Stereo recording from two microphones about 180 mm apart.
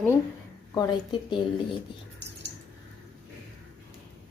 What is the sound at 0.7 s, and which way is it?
Speech, 25° left (ahead or behind).